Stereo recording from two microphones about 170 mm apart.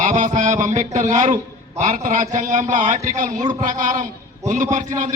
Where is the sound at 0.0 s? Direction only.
45° right (ahead or behind).